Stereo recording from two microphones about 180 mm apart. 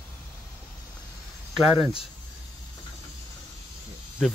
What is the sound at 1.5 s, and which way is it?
Speech, centre (ahead or behind).